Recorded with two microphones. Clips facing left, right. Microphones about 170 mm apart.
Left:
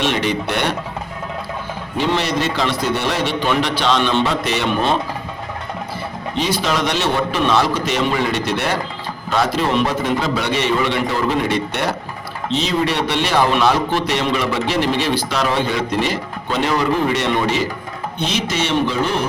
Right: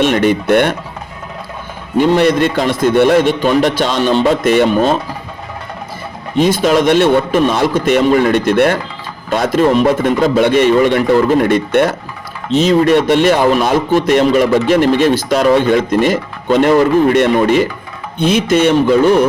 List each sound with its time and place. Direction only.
0.0 s speech: 50° right (ahead or behind)
2.0 s speech: 50° right (ahead or behind)
6.3 s speech: 50° right (ahead or behind)